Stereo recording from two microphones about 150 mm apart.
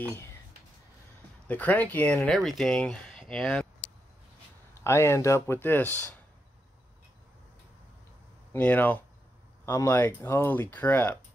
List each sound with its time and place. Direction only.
1.5 s speech: 10° left (ahead or behind)
4.8 s speech: 20° left (ahead or behind)
8.5 s speech: 10° left (ahead or behind)